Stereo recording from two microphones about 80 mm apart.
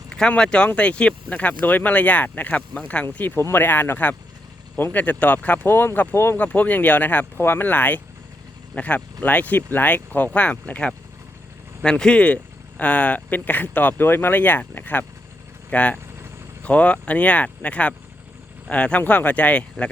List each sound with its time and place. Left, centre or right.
0.1 s speech: centre
3.3 s speech: left
6.4 s speech: centre